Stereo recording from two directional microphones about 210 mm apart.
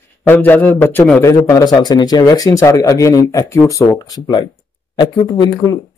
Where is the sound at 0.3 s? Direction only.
10° left (ahead or behind).